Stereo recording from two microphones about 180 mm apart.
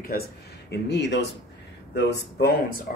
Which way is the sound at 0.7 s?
75° left (ahead or behind).